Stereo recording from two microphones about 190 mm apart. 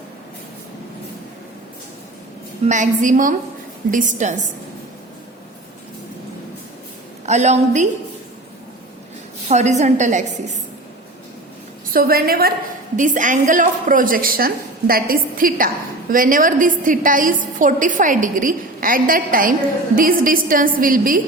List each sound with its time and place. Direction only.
2.6 s a woman's voice: 40° right (ahead or behind)
7.3 s a woman's voice: 35° right (ahead or behind)
9.5 s a woman's voice: 35° right (ahead or behind)
11.9 s a woman's voice: 55° right (ahead or behind)
13.0 s a woman's voice: 40° right (ahead or behind)